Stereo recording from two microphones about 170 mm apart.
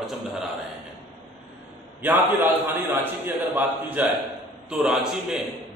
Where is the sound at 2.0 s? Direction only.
15° right (ahead or behind).